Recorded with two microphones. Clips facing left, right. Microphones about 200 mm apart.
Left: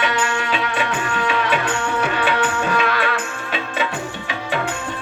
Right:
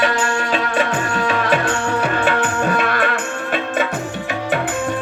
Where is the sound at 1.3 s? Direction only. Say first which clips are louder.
Right 2 dB; 40° right (ahead or behind).